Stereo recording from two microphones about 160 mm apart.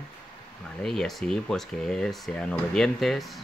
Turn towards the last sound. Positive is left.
turn(degrees=0)  # may be behind; listen again after turning